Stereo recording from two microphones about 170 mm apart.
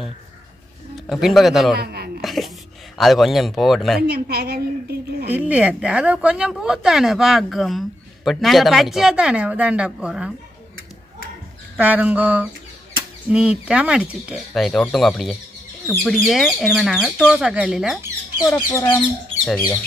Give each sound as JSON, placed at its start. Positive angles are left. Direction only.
{"t": 0.9, "sound": "speech", "side_deg": 0}
{"t": 1.8, "sound": "a sound", "side_deg": -65}
{"t": 2.2, "sound": "a sound", "side_deg": 0}
{"t": 3.0, "sound": "speech", "side_deg": 0}
{"t": 4.1, "sound": "a woman's voice", "side_deg": -65}
{"t": 5.3, "sound": "speech", "side_deg": -10}
{"t": 11.7, "sound": "speech", "side_deg": -10}
{"t": 18.5, "sound": "speech", "side_deg": 15}